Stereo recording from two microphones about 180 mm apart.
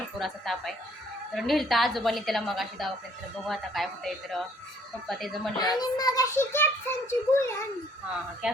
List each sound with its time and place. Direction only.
0.2 s a sound: centre (ahead or behind)
1.3 s a woman's voice: centre (ahead or behind)
5.8 s a child's voice: 20° left (ahead or behind)